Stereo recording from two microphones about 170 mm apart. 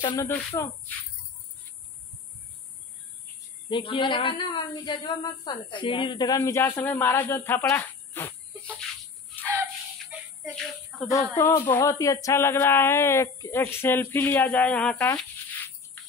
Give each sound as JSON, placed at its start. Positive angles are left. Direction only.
{"t": 0.0, "sound": "a woman's voice", "side_deg": 25}
{"t": 0.3, "sound": "speech", "side_deg": 10}
{"t": 3.6, "sound": "a woman's voice", "side_deg": 30}
{"t": 9.4, "sound": "a sound", "side_deg": -10}
{"t": 10.5, "sound": "speech", "side_deg": 5}
{"t": 11.3, "sound": "speech", "side_deg": 15}
{"t": 15.1, "sound": "insect", "side_deg": 10}